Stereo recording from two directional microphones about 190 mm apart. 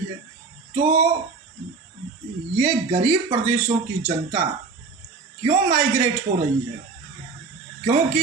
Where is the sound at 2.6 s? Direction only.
35° right (ahead or behind).